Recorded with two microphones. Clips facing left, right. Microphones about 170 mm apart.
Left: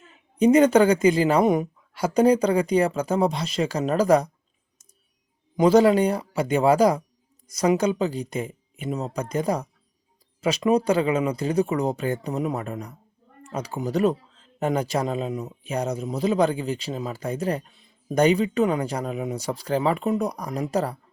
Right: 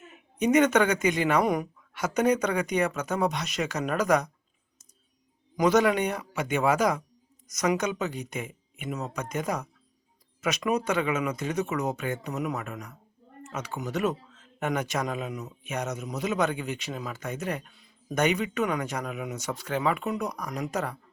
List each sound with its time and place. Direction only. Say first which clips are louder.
0.3 s speech: left 5 dB; 30° left (ahead or behind)
5.5 s speech: left 6 dB; 30° left (ahead or behind)